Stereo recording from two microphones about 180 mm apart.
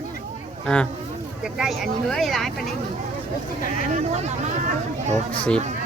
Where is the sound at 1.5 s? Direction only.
Centre (ahead or behind).